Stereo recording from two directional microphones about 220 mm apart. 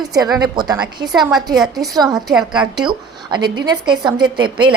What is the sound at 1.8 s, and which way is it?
Speech, 15° right (ahead or behind).